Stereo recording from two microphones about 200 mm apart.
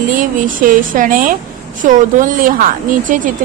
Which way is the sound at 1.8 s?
40° right (ahead or behind).